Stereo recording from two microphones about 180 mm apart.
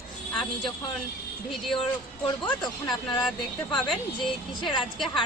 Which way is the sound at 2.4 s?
25° left (ahead or behind).